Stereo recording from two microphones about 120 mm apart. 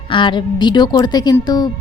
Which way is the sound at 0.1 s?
40° left (ahead or behind).